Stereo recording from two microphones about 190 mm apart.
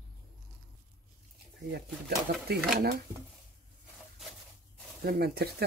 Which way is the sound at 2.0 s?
55° right (ahead or behind).